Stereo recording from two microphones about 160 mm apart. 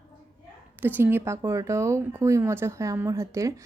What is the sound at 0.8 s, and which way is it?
Speech, 10° right (ahead or behind).